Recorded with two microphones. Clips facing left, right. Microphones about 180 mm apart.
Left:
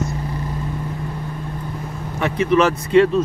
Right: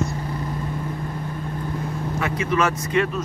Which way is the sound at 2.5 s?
25° left (ahead or behind).